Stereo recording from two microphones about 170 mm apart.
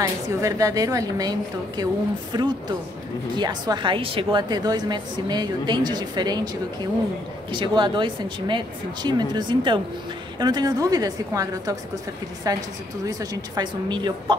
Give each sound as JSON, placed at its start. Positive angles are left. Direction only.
{"t": 0.0, "sound": "a woman's voice", "side_deg": -20}
{"t": 2.3, "sound": "a woman's voice", "side_deg": -25}